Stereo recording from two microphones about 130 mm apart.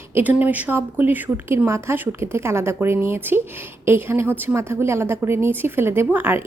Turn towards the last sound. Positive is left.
turn(degrees=-20)  # may be behind; listen again after turning